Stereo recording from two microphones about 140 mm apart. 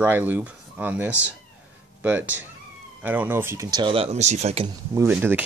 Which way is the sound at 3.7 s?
40° right (ahead or behind).